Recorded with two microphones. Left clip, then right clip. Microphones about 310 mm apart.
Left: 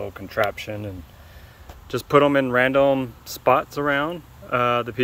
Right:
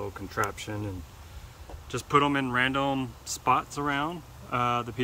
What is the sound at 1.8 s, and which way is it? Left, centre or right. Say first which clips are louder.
Speech: left 7 dB; centre.